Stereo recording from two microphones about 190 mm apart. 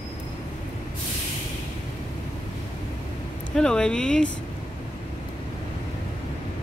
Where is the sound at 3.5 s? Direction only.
5° left (ahead or behind).